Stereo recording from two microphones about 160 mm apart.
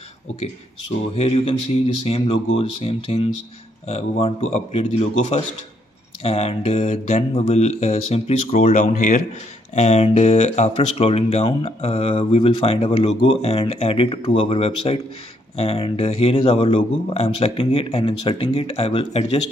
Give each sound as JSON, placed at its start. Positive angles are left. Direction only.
{"t": 1.1, "sound": "speech", "side_deg": 40}
{"t": 9.8, "sound": "speech", "side_deg": 40}